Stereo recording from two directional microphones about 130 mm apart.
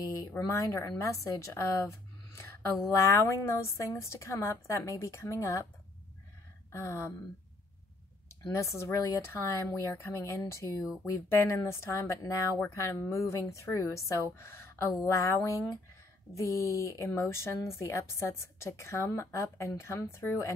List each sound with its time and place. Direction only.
0.5 s speech: 20° left (ahead or behind)
6.7 s speech: 20° left (ahead or behind)
8.5 s speech: 20° left (ahead or behind)